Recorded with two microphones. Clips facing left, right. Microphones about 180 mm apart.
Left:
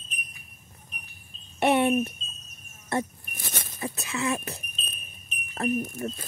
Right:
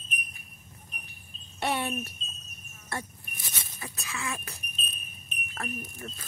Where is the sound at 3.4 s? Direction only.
55° left (ahead or behind).